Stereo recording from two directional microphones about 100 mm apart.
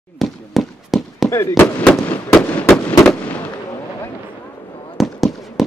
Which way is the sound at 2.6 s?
15° left (ahead or behind).